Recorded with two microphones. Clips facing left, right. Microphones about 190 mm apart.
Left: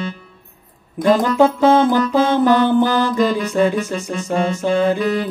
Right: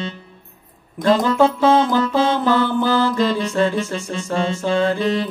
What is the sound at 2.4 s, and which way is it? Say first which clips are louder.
Music: left 4 dB; 20° left (ahead or behind).